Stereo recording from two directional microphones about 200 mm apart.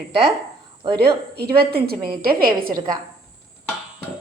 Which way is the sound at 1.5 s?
50° right (ahead or behind).